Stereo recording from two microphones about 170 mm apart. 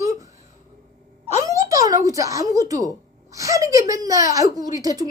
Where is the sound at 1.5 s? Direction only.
20° right (ahead or behind).